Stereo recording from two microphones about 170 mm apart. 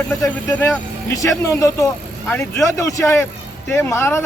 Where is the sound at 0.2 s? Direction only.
15° left (ahead or behind).